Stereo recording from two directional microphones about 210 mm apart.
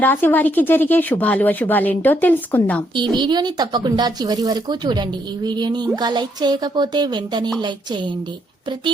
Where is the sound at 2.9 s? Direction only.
20° right (ahead or behind).